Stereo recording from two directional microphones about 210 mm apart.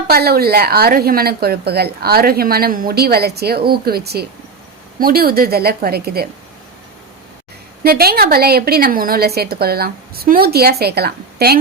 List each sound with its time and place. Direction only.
0.1 s a woman's voice: 45° right (ahead or behind)
7.9 s a woman's voice: 45° right (ahead or behind)